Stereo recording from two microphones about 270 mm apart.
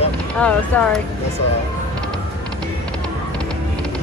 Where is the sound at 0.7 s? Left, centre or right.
Centre.